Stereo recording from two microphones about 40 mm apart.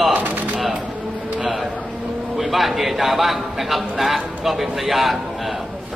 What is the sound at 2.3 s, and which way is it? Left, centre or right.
A man's voice, centre.